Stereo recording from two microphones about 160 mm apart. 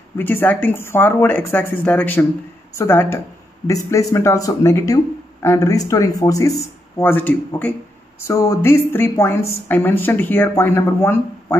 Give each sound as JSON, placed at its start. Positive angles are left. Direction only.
{"t": 0.2, "sound": "a woman's voice", "side_deg": 15}